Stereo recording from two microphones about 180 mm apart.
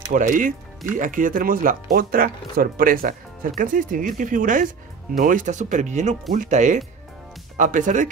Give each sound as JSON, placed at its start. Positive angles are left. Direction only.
{"t": 0.1, "sound": "speech", "side_deg": -45}